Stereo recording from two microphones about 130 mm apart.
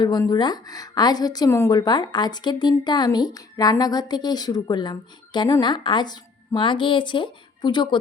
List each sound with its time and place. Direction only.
0.0 s a woman's voice: 30° left (ahead or behind)